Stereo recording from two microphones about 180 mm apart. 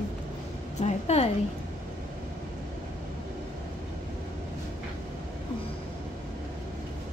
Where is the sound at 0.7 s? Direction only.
40° left (ahead or behind).